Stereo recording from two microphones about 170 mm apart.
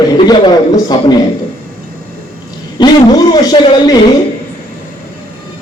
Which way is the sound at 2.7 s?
25° left (ahead or behind).